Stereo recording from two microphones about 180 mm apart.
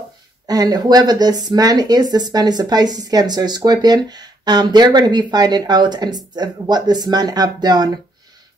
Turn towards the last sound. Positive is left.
turn(degrees=-20)  # may be behind; listen again after turning